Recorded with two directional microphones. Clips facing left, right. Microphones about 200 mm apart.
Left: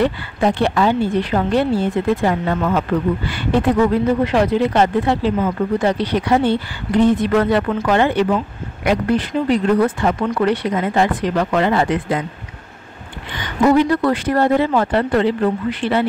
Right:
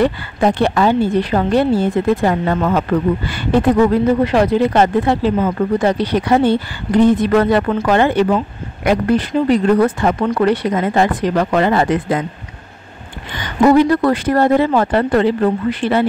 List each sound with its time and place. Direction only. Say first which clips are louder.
0.0 s speech: right 2 dB; 45° right (ahead or behind)
4.3 s speech: right 2 dB; 40° right (ahead or behind)
13.7 s speech: right 3 dB; 40° right (ahead or behind)